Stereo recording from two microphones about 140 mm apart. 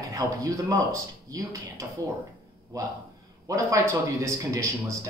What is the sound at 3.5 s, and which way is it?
Speech, 25° right (ahead or behind).